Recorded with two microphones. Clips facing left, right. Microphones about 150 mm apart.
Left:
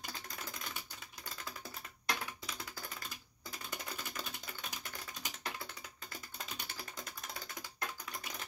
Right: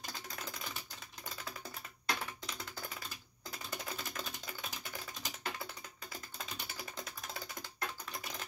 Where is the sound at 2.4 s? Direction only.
Centre (ahead or behind).